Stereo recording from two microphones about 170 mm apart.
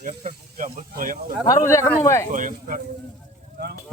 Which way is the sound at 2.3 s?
50° right (ahead or behind).